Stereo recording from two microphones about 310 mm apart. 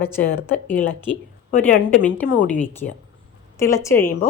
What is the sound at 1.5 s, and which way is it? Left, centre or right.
Speech, left.